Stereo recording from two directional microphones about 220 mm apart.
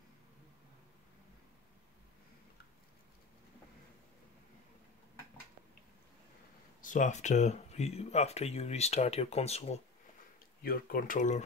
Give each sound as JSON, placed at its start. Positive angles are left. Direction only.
{"t": 6.8, "sound": "speech", "side_deg": 35}
{"t": 10.6, "sound": "speech", "side_deg": 40}